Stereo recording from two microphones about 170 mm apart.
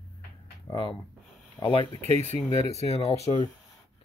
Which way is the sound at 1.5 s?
30° left (ahead or behind).